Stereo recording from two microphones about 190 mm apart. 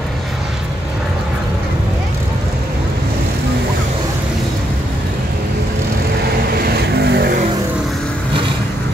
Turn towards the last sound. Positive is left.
turn(degrees=-55)  # may be behind; listen again after turning